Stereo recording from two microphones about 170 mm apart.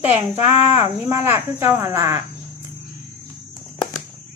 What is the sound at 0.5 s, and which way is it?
Speech, 35° left (ahead or behind).